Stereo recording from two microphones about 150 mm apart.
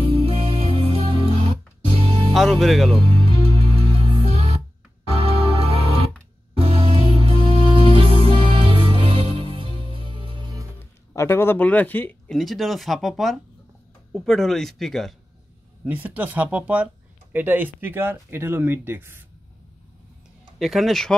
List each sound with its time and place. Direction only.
0.0 s music: 40° right (ahead or behind)
2.3 s speech: centre (ahead or behind)
3.0 s music: 35° right (ahead or behind)
10.8 s speech: 15° left (ahead or behind)
12.4 s speech: centre (ahead or behind)
15.8 s speech: 10° right (ahead or behind)
20.5 s speech: centre (ahead or behind)